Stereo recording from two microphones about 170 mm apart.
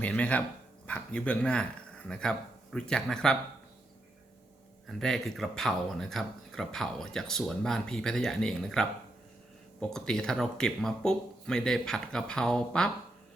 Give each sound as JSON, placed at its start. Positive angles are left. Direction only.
{"t": 0.0, "sound": "speech", "side_deg": 10}
{"t": 4.9, "sound": "speech", "side_deg": 0}